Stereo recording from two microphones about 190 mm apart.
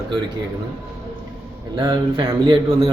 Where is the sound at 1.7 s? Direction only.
25° right (ahead or behind).